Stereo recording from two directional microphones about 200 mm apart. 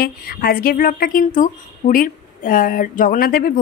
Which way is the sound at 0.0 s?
50° left (ahead or behind).